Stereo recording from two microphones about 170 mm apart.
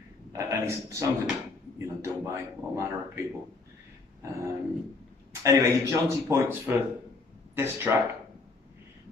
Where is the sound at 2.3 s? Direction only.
15° right (ahead or behind).